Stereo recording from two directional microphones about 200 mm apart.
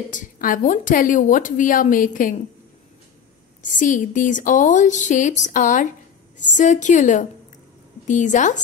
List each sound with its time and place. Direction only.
0.1 s a woman's voice: 40° left (ahead or behind)
3.7 s a woman's voice: 40° left (ahead or behind)